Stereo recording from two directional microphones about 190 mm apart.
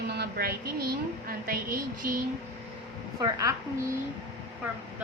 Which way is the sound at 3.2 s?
20° right (ahead or behind).